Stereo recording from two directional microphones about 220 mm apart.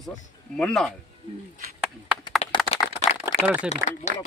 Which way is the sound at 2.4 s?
30° left (ahead or behind).